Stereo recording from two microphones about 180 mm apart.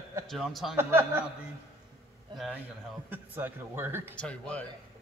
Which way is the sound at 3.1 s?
10° right (ahead or behind).